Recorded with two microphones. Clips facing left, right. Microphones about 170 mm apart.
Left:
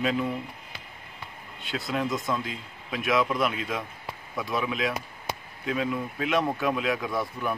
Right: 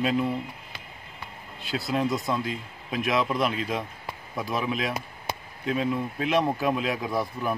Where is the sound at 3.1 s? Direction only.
25° right (ahead or behind).